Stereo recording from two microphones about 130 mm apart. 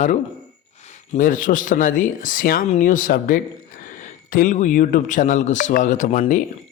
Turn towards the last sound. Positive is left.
turn(degrees=75)  # may be behind; listen again after turning